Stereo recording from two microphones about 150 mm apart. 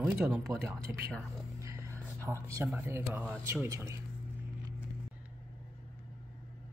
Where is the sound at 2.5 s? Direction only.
15° right (ahead or behind).